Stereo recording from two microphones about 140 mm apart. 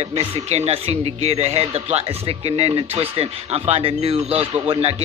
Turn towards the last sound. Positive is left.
turn(degrees=-45)  # may be behind; listen again after turning